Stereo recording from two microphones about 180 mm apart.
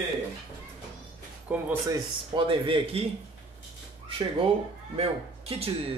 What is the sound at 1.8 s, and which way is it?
Speech, 30° right (ahead or behind).